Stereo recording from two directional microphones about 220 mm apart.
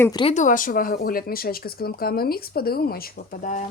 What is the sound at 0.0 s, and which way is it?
Speech, 20° left (ahead or behind).